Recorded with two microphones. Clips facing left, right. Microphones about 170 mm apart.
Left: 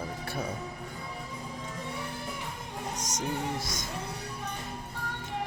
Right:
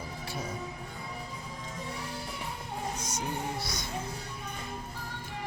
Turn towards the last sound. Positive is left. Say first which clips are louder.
# left 2 dB
turn(degrees=45)  # may be behind; listen again after turning